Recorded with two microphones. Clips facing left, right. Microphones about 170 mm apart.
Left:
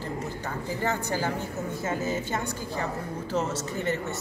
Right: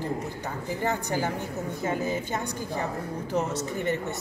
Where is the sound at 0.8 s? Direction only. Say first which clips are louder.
Right 1 dB; 15° right (ahead or behind).